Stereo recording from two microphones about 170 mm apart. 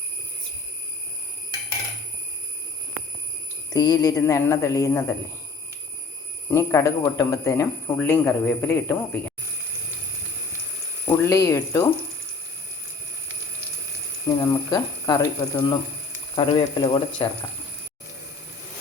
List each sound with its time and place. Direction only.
3.7 s speech: 25° left (ahead or behind)
6.5 s a man's voice: 15° left (ahead or behind)
11.0 s a sound: 15° left (ahead or behind)
11.4 s speech: 20° left (ahead or behind)
14.3 s speech: 25° left (ahead or behind)